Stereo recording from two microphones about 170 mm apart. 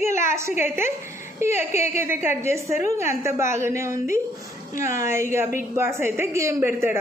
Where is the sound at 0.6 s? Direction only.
15° right (ahead or behind).